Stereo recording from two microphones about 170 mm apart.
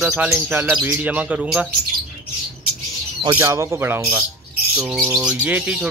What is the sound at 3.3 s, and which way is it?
Speech, 15° right (ahead or behind).